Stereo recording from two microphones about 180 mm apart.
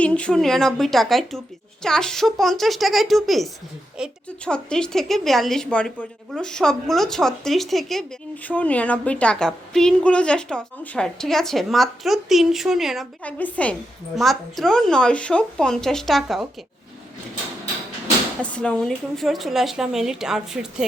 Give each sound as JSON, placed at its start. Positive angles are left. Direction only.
{"t": 0.0, "sound": "a woman's voice", "side_deg": 5}
{"t": 18.5, "sound": "a woman's voice", "side_deg": 5}